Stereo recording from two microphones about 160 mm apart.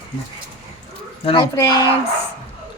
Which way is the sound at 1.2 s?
30° left (ahead or behind).